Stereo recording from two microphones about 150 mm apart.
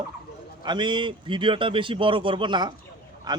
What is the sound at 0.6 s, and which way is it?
A man's voice, 30° right (ahead or behind).